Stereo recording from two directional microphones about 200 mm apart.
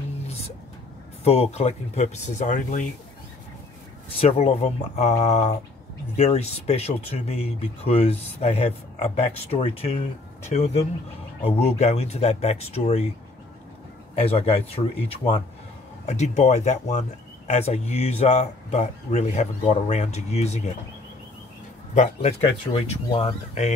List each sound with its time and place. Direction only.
1.2 s speech: 30° left (ahead or behind)
4.2 s speech: 30° left (ahead or behind)
14.2 s speech: 30° left (ahead or behind)
21.9 s speech: 35° left (ahead or behind)